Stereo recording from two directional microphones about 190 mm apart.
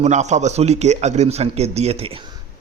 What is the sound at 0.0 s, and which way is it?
A man's voice, 35° right (ahead or behind).